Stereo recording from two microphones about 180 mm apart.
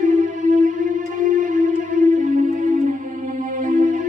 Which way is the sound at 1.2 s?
45° right (ahead or behind).